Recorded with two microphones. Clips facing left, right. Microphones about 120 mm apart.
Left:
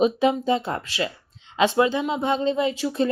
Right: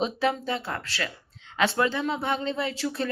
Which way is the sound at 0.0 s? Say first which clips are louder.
Left 6 dB; 15° left (ahead or behind).